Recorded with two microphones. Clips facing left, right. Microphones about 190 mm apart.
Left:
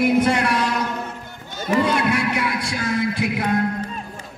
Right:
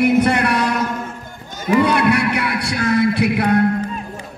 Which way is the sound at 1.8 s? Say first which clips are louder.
Right 4 dB; 65° right (ahead or behind).